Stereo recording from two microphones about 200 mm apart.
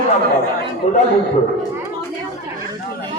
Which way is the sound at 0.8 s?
35° left (ahead or behind).